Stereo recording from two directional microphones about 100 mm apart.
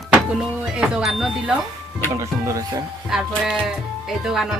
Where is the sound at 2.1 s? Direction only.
30° right (ahead or behind).